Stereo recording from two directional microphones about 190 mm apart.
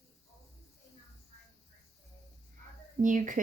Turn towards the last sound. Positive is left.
turn(degrees=-40)  # may be behind; listen again after turning